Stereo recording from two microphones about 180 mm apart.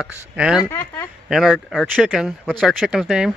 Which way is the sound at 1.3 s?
Centre (ahead or behind).